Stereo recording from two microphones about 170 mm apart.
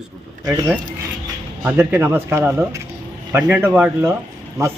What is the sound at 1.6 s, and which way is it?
A man's voice, 10° right (ahead or behind).